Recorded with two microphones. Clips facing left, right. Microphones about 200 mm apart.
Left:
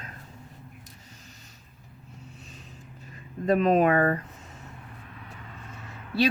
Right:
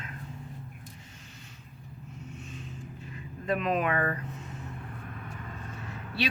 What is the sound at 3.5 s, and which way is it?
Speech, 40° left (ahead or behind).